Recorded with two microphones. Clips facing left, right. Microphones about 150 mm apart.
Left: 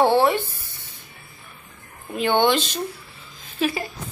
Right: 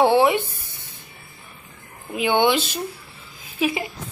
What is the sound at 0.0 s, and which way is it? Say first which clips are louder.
Music: right 1 dB; 15° right (ahead or behind).